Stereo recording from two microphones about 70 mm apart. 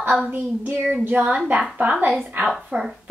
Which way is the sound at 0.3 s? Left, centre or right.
Right.